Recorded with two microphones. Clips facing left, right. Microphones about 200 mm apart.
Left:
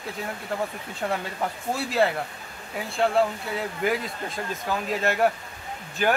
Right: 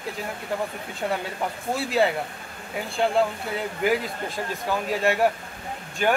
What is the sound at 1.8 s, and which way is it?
Speech, centre (ahead or behind).